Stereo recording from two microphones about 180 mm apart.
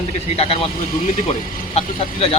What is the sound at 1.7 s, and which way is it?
Speech, 35° left (ahead or behind).